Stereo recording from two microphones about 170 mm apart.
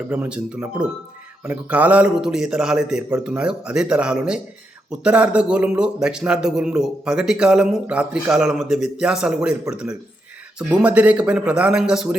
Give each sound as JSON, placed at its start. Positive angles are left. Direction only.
{"t": 0.1, "sound": "a man's voice", "side_deg": -10}